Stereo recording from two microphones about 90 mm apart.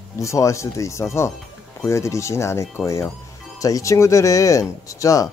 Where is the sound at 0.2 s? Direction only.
35° left (ahead or behind).